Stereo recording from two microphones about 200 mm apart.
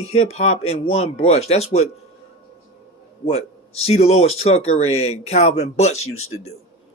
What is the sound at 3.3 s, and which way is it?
A man's voice, 30° left (ahead or behind).